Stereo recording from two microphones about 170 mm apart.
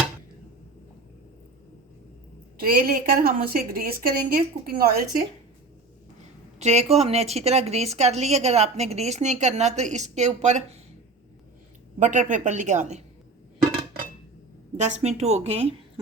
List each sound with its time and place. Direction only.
2.6 s a woman's voice: 55° right (ahead or behind)
6.6 s speech: 40° right (ahead or behind)
12.0 s a woman's voice: 45° right (ahead or behind)
14.8 s speech: 45° right (ahead or behind)